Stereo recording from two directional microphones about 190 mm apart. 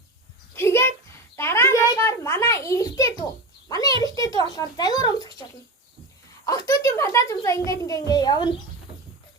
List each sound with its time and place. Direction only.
0.5 s a sound: 15° left (ahead or behind)
4.0 s a child's voice: 20° left (ahead or behind)
6.8 s a child's voice: 15° left (ahead or behind)